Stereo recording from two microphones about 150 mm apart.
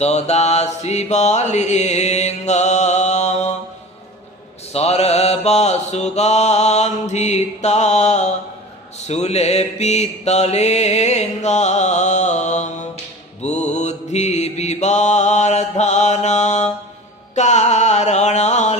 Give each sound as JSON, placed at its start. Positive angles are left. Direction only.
{"t": 0.0, "sound": "mantra", "side_deg": 45}
{"t": 4.7, "sound": "mantra", "side_deg": 45}
{"t": 17.3, "sound": "music", "side_deg": 50}